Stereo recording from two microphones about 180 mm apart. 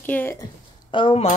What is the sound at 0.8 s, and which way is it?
Speech, 30° left (ahead or behind).